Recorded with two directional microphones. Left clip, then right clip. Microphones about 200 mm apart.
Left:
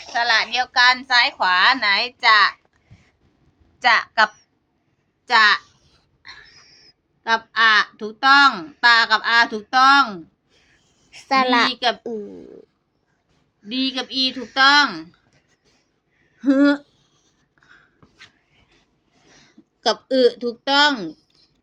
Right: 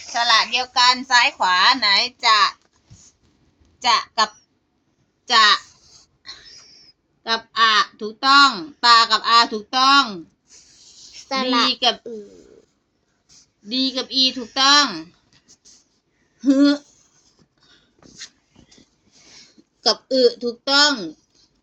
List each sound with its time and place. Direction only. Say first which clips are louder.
0.1 s a woman's voice: right 1 dB; 5° left (ahead or behind)
5.2 s speech: even; 5° left (ahead or behind)
6.2 s a sound: right 2 dB; 5° left (ahead or behind)
7.3 s speech: left 1 dB; 10° left (ahead or behind)
11.1 s a woman's voice: left 4 dB; 50° left (ahead or behind)
11.7 s speech: right 2 dB; 5° left (ahead or behind)
13.7 s speech: right 1 dB; 10° left (ahead or behind)
16.4 s speech: even; 10° left (ahead or behind)
19.8 s speech: even; 15° left (ahead or behind)